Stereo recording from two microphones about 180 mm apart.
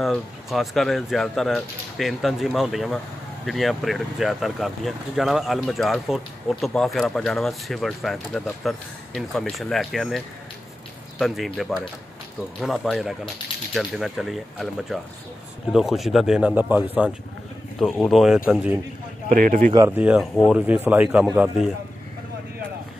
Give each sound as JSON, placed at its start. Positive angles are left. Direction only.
{"t": 0.0, "sound": "speech", "side_deg": 0}
{"t": 17.7, "sound": "speech", "side_deg": 0}
{"t": 19.2, "sound": "speech", "side_deg": -45}
{"t": 19.7, "sound": "speech", "side_deg": -20}
{"t": 20.0, "sound": "speech", "side_deg": -5}